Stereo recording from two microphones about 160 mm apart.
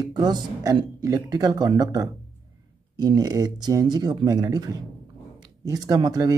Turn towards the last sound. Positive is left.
turn(degrees=-25)  # may be behind; listen again after turning